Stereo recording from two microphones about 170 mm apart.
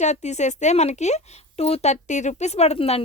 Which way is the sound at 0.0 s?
40° left (ahead or behind).